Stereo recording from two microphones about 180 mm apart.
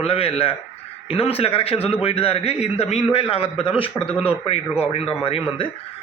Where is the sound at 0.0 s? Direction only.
30° left (ahead or behind).